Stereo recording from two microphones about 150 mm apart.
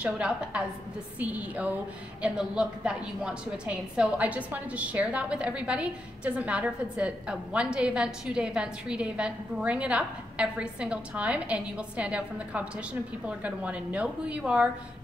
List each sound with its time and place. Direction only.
0.0 s a woman's voice: 5° right (ahead or behind)
2.2 s a woman's voice: 5° right (ahead or behind)